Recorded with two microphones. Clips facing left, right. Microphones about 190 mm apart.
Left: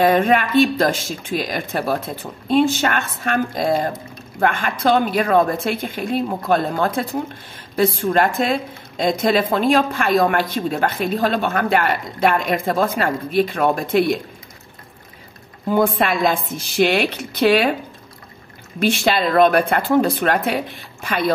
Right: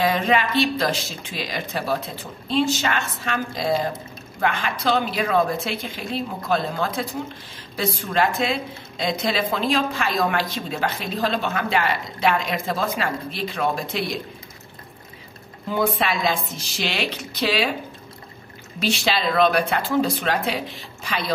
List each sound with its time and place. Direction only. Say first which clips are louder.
0.0 s a woman's voice: left 5 dB; 55° left (ahead or behind)
15.7 s a woman's voice: left 5 dB; 50° left (ahead or behind)
18.8 s a woman's voice: left 5 dB; 55° left (ahead or behind)